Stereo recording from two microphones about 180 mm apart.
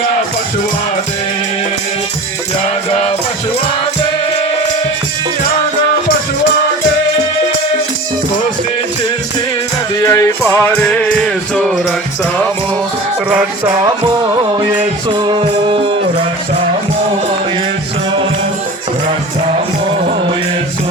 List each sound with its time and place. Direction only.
10.0 s music: 15° left (ahead or behind)
15.1 s music: 25° right (ahead or behind)